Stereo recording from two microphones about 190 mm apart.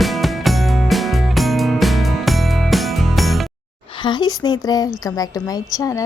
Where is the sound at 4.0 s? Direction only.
25° left (ahead or behind).